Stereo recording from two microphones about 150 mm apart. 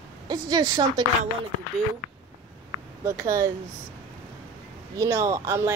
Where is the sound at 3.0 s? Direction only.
15° right (ahead or behind).